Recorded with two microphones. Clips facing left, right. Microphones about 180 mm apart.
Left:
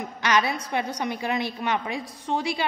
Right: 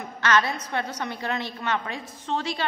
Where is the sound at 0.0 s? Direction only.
15° left (ahead or behind).